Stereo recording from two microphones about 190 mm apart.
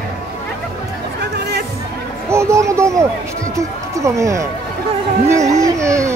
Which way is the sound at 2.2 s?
15° right (ahead or behind).